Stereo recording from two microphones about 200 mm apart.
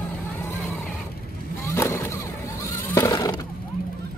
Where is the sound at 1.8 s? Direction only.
15° left (ahead or behind).